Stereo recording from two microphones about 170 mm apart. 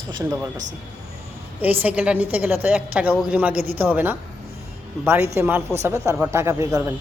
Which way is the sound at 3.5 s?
60° right (ahead or behind).